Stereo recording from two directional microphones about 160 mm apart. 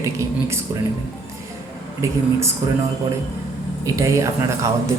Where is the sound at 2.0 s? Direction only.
20° right (ahead or behind).